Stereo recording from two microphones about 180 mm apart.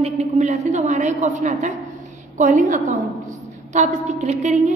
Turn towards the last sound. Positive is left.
turn(degrees=-40)  # may be behind; listen again after turning